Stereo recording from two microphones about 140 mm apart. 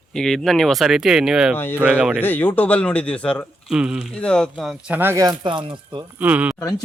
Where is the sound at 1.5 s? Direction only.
15° left (ahead or behind).